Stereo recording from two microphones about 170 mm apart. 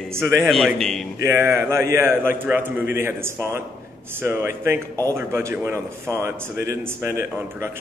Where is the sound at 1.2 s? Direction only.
15° right (ahead or behind).